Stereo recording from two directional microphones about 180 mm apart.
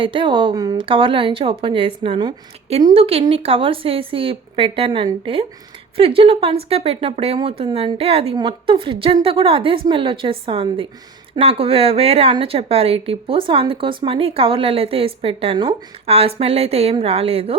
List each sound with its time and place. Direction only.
0.0 s speech: 30° right (ahead or behind)